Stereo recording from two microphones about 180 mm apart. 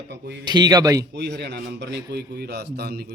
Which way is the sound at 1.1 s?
70° right (ahead or behind).